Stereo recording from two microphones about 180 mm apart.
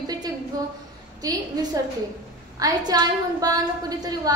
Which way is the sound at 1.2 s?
20° right (ahead or behind).